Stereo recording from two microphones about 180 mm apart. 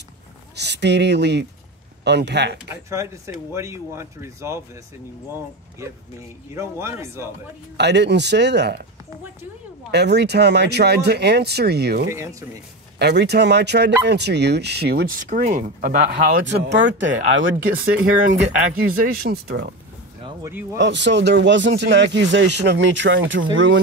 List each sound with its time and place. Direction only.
0.6 s speech: 70° right (ahead or behind)
2.7 s speech: 15° right (ahead or behind)
6.5 s speech: 15° right (ahead or behind)
7.7 s speech: 70° right (ahead or behind)
9.8 s speech: 70° right (ahead or behind)
12.1 s speech: 15° right (ahead or behind)
13.0 s speech: 70° right (ahead or behind)
15.2 s speech: 45° right (ahead or behind)
16.4 s speech: 80° right
18.7 s speech: 55° right (ahead or behind)
20.7 s speech: 85° right